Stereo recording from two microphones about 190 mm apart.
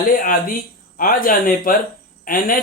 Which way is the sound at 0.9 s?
45° left (ahead or behind).